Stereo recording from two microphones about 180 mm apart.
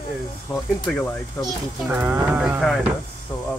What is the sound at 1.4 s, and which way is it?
Speech, 15° left (ahead or behind).